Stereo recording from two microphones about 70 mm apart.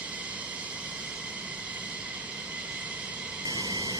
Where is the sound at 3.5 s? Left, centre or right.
Right.